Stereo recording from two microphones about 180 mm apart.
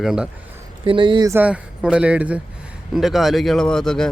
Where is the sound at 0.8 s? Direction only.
25° right (ahead or behind).